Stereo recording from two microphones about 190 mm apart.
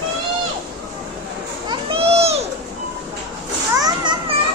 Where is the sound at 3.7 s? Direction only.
20° right (ahead or behind).